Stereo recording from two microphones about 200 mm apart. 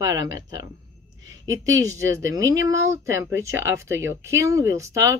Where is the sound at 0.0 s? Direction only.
15° right (ahead or behind).